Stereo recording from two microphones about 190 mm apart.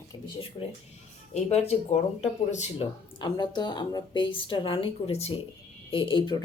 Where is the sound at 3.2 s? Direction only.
25° left (ahead or behind).